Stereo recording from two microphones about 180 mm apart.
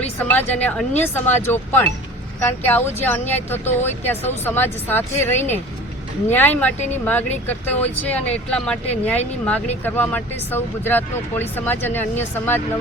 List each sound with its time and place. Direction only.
0.2 s speech: 10° left (ahead or behind)